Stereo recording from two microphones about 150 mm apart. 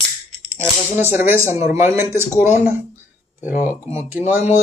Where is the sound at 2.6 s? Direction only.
10° right (ahead or behind).